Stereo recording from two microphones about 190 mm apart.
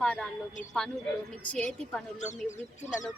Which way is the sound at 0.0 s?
5° left (ahead or behind).